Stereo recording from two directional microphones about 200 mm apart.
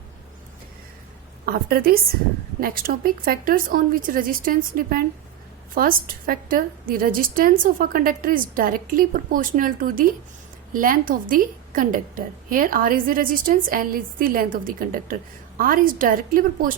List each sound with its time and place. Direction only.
1.5 s a woman's voice: 50° right (ahead or behind)